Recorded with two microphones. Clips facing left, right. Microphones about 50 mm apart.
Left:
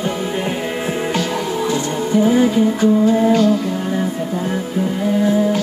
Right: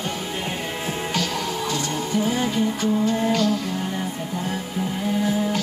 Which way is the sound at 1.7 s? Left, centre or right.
Centre.